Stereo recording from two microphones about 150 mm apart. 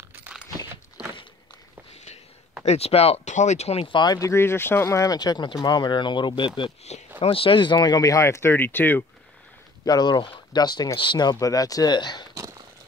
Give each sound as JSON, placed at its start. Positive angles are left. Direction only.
{"t": 0.1, "sound": "a sound", "side_deg": -10}
{"t": 2.6, "sound": "speech", "side_deg": 45}
{"t": 9.8, "sound": "speech", "side_deg": 30}